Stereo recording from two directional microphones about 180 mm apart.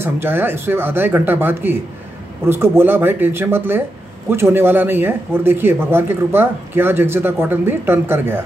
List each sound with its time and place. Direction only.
0.0 s speech: 10° right (ahead or behind)